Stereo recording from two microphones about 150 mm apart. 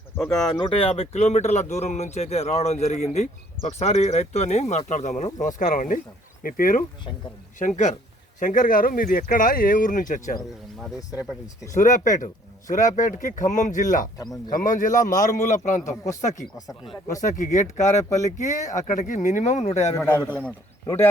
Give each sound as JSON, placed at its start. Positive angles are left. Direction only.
{"t": 0.2, "sound": "speech", "side_deg": 5}
{"t": 0.7, "sound": "speech", "side_deg": 40}
{"t": 7.6, "sound": "speech", "side_deg": 55}
{"t": 11.8, "sound": "speech", "side_deg": 55}
{"t": 17.2, "sound": "speech", "side_deg": 55}
{"t": 20.1, "sound": "a man's voice", "side_deg": 15}